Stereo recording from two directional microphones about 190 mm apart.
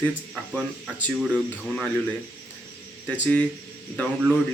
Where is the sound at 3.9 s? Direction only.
Centre (ahead or behind).